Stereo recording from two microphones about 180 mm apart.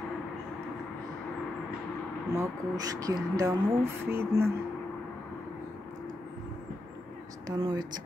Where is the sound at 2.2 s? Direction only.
20° right (ahead or behind).